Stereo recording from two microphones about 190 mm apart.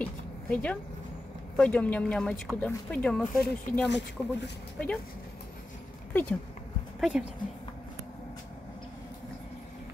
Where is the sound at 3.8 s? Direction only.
65° left (ahead or behind).